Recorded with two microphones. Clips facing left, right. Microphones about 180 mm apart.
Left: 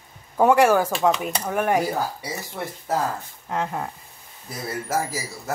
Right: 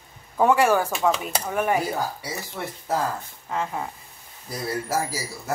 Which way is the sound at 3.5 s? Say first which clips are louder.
Left 1 dB; 5° left (ahead or behind).